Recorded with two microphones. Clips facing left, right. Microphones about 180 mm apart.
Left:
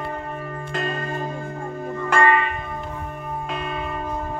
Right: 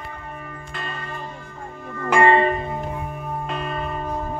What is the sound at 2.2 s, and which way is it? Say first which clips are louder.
Music: right 4 dB; 30° right (ahead or behind).